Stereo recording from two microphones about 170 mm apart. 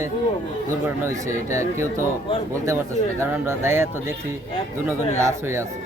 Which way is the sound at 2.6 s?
15° right (ahead or behind).